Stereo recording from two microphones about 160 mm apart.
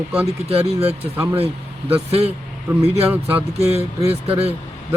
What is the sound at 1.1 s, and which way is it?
Speech, 15° right (ahead or behind).